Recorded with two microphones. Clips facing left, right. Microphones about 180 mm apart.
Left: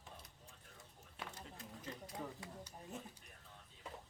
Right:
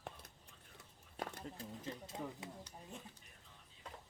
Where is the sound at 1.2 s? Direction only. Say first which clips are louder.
Right 6 dB; 40° right (ahead or behind).